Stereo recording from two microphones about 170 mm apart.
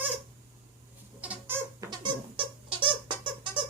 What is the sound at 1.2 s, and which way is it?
Squeak, 10° right (ahead or behind).